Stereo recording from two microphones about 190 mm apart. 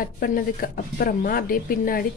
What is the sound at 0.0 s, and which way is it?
Speech, 50° left (ahead or behind).